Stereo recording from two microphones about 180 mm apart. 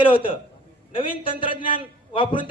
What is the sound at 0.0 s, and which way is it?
A man's voice, 30° left (ahead or behind).